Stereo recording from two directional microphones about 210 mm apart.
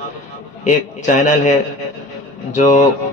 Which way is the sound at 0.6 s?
35° left (ahead or behind).